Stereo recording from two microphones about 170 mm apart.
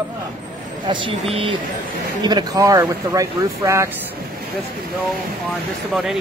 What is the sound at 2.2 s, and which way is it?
Speech, 25° right (ahead or behind).